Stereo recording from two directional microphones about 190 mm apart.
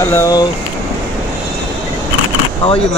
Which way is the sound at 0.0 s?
15° left (ahead or behind).